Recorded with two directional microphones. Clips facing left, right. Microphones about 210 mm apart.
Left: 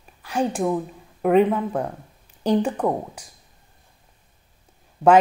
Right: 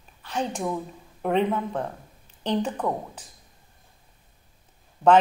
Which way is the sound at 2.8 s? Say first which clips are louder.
Left 5 dB; 35° left (ahead or behind).